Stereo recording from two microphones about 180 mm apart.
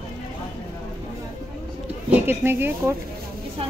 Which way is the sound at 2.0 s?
10° right (ahead or behind).